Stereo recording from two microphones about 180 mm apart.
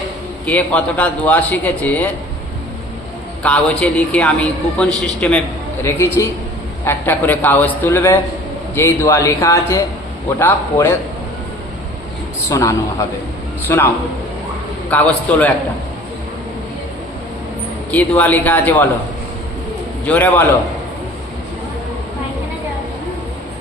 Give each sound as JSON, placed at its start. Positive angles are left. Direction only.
{"t": 0.4, "sound": "a man's voice", "side_deg": 5}
{"t": 3.4, "sound": "a man's voice", "side_deg": 5}
{"t": 5.8, "sound": "a man's voice", "side_deg": 15}
{"t": 12.5, "sound": "a man's voice", "side_deg": 15}
{"t": 17.9, "sound": "a man's voice", "side_deg": 10}
{"t": 20.1, "sound": "a man's voice", "side_deg": 10}